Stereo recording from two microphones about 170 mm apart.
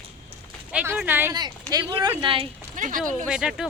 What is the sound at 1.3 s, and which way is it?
Speech, 25° right (ahead or behind).